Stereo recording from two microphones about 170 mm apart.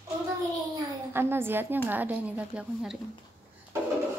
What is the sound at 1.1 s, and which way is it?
Speech, 15° right (ahead or behind).